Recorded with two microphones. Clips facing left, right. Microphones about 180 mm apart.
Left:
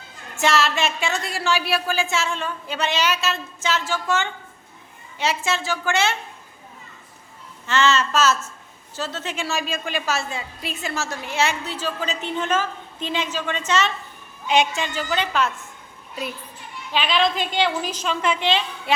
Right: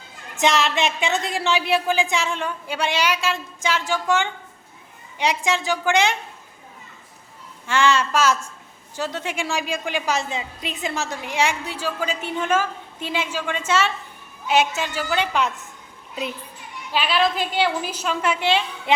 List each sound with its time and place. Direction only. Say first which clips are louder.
0.3 s a woman's voice: right 1 dB; 20° right (ahead or behind)
7.7 s a woman's voice: right 1 dB; 10° right (ahead or behind)
16.9 s a woman's voice: even; 5° right (ahead or behind)